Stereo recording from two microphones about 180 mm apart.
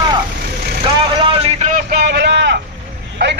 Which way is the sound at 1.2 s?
35° right (ahead or behind).